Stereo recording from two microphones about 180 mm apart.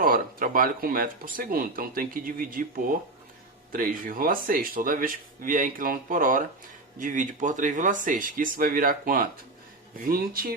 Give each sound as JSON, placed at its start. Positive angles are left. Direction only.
{"t": 0.0, "sound": "speech", "side_deg": -50}